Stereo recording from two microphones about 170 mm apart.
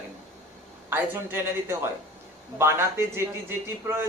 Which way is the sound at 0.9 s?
10° right (ahead or behind).